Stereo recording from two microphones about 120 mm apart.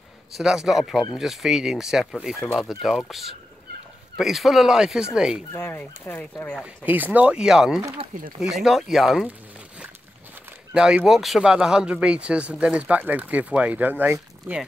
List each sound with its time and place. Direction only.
0.4 s speech: 5° right (ahead or behind)
5.5 s speech: 15° left (ahead or behind)
6.6 s speech: 15° right (ahead or behind)
10.7 s speech: 5° right (ahead or behind)